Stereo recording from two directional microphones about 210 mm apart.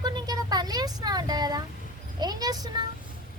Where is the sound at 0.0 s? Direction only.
20° right (ahead or behind).